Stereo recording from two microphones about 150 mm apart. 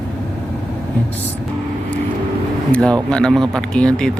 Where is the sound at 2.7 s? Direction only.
5° left (ahead or behind).